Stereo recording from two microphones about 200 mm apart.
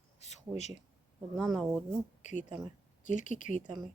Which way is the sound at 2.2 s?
35° left (ahead or behind).